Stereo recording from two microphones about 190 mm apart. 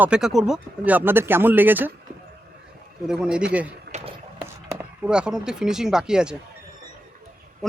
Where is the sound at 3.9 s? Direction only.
35° right (ahead or behind).